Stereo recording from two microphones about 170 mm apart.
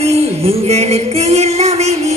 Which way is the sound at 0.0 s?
35° right (ahead or behind).